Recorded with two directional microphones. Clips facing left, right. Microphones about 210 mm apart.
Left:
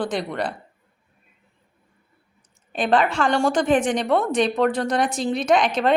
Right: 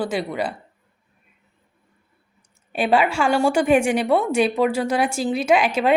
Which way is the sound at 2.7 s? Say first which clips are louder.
Right 1 dB; 10° right (ahead or behind).